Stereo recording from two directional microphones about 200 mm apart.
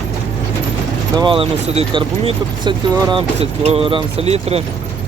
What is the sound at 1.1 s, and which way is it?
Speech, 25° right (ahead or behind).